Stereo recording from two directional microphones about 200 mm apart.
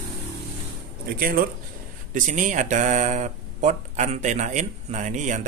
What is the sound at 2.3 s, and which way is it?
Speech, 40° right (ahead or behind).